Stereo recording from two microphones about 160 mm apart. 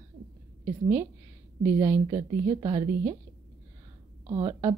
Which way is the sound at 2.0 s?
25° right (ahead or behind).